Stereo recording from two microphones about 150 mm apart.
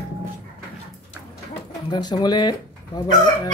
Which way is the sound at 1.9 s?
30° left (ahead or behind).